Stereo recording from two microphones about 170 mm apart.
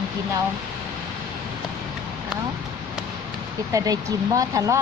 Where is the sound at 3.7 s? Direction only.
20° right (ahead or behind).